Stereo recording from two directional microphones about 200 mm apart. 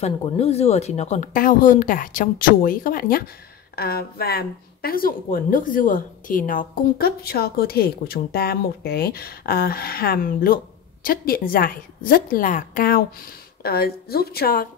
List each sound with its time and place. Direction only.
0.0 s speech: 30° left (ahead or behind); by 14.7 s 45° left (ahead or behind)